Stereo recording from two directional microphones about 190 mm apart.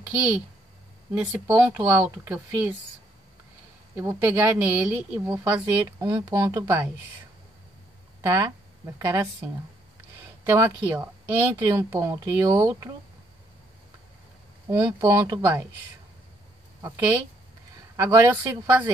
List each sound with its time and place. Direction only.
1.1 s speech: 10° right (ahead or behind)
3.9 s speech: 15° right (ahead or behind)
8.2 s speech: 15° right (ahead or behind)
14.7 s speech: 15° right (ahead or behind)
16.8 s speech: 15° right (ahead or behind)